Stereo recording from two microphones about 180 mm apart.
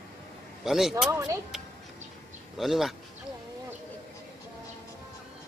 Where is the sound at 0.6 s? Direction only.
Centre (ahead or behind).